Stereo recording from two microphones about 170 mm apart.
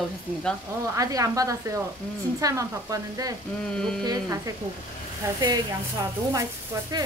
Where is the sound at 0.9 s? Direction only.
20° right (ahead or behind).